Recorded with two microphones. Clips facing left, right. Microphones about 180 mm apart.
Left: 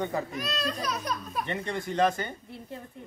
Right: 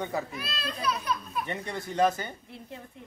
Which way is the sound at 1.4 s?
10° right (ahead or behind).